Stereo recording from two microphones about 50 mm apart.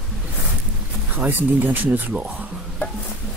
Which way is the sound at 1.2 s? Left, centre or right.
Right.